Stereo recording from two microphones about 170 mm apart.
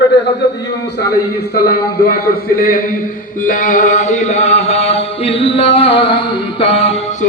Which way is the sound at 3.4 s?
50° left (ahead or behind).